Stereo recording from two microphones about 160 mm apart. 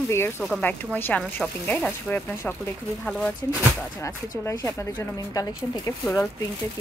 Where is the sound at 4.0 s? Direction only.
15° left (ahead or behind).